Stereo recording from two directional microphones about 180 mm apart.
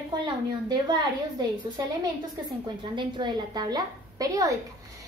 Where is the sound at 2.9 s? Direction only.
25° right (ahead or behind).